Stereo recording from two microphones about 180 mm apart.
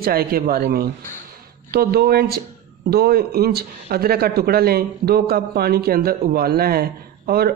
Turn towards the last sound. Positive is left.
turn(degrees=-60)  # may be behind; listen again after turning